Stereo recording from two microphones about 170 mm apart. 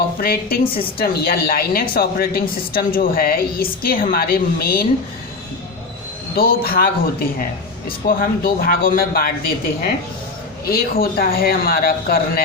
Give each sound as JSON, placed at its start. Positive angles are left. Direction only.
{"t": 0.2, "sound": "a woman's voice", "side_deg": 60}
{"t": 6.3, "sound": "a woman's voice", "side_deg": 60}
{"t": 10.7, "sound": "a woman's voice", "side_deg": 60}